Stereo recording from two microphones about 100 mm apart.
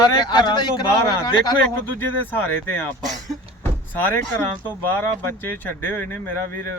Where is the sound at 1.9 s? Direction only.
20° left (ahead or behind).